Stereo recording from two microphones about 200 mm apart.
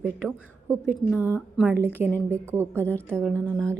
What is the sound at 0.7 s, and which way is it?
Speech, 10° left (ahead or behind).